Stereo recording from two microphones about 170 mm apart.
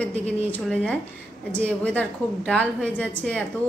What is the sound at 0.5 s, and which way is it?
A woman's voice, 5° left (ahead or behind).